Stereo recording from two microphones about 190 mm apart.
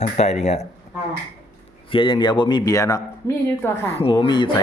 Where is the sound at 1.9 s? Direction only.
25° left (ahead or behind).